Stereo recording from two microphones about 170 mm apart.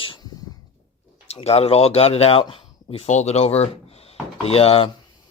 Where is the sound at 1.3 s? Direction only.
35° left (ahead or behind).